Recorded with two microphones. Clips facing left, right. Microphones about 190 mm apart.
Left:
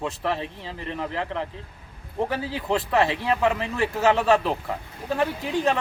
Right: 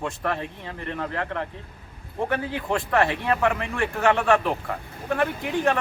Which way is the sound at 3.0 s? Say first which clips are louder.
Even; 30° left (ahead or behind).